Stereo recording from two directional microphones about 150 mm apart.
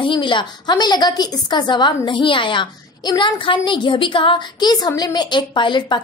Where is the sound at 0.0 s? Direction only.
30° left (ahead or behind).